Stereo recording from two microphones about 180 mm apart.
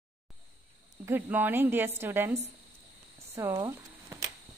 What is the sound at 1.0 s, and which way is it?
Speech, 10° right (ahead or behind).